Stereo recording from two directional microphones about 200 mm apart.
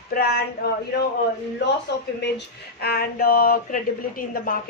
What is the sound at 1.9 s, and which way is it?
Speech, 60° left (ahead or behind).